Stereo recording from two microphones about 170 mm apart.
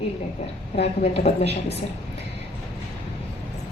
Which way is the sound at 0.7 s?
35° left (ahead or behind).